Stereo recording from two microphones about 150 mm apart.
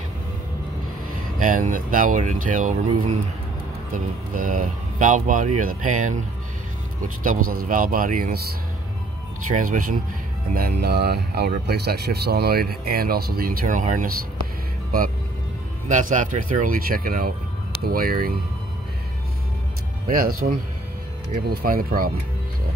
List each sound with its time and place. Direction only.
1.4 s speech: 60° right (ahead or behind)
7.2 s speech: 65° right (ahead or behind)
9.5 s speech: 60° right (ahead or behind)
10.5 s speech: 90° right; by 14.1 s 60° right (ahead or behind)
15.9 s speech: 55° right (ahead or behind); by 18.3 s 75° right (ahead or behind)
20.1 s speech: 70° right (ahead or behind)